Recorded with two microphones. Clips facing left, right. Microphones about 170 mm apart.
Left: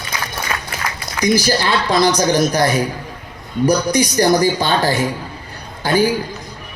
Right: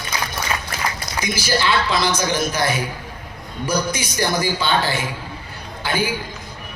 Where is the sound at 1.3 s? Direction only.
45° left (ahead or behind).